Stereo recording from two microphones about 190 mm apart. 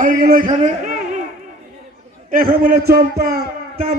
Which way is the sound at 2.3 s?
50° right (ahead or behind).